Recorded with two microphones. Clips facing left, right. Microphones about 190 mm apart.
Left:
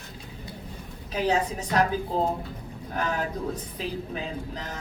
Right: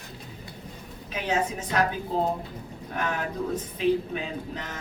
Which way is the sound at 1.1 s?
35° left (ahead or behind).